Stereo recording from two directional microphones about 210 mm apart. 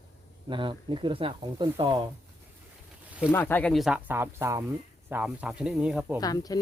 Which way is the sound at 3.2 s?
10° left (ahead or behind).